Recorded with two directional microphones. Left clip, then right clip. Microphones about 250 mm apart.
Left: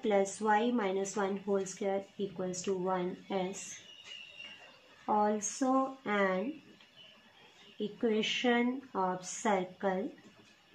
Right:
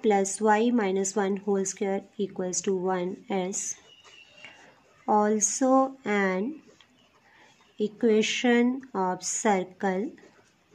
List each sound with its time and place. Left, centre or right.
0.0 s a woman's voice: right
5.0 s a woman's voice: right
8.0 s a woman's voice: right